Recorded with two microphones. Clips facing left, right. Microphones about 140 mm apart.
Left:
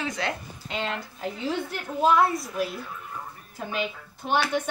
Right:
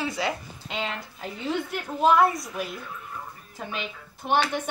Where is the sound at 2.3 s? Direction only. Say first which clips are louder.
Left 3 dB; centre (ahead or behind).